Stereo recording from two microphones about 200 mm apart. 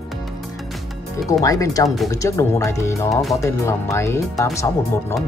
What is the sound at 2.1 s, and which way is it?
Speech, 15° left (ahead or behind).